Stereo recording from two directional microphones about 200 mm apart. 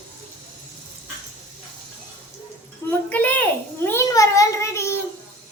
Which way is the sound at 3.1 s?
10° left (ahead or behind).